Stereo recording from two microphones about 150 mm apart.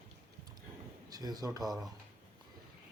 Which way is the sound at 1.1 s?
25° right (ahead or behind).